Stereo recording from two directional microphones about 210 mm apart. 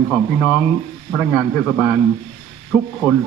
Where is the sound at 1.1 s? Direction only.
10° left (ahead or behind).